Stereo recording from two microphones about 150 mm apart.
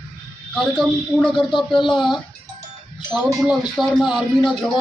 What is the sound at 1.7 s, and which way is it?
Speech, 30° left (ahead or behind).